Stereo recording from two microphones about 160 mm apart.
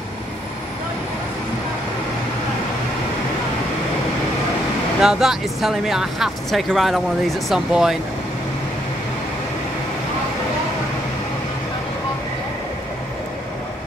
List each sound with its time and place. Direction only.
5.0 s speech: centre (ahead or behind)